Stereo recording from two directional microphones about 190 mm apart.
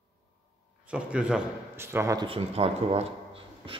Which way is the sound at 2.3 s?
30° right (ahead or behind).